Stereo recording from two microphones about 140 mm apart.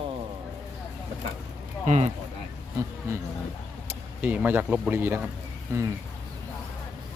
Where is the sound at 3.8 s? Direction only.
10° right (ahead or behind).